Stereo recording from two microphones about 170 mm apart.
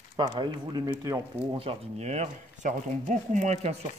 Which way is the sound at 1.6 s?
35° right (ahead or behind).